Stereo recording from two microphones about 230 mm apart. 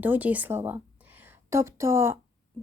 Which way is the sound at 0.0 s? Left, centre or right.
Centre.